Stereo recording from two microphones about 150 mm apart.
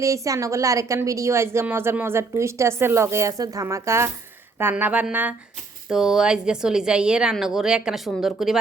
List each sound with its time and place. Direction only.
0.0 s a woman's voice: 20° right (ahead or behind); by 8.5 s centre (ahead or behind)